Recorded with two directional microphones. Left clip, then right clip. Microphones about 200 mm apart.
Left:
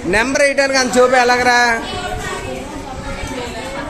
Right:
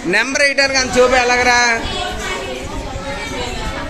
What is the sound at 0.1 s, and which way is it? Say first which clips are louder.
A man's voice: even; 10° left (ahead or behind).